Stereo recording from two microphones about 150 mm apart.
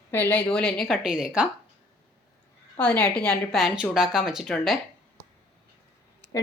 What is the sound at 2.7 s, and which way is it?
A woman's voice, 10° left (ahead or behind).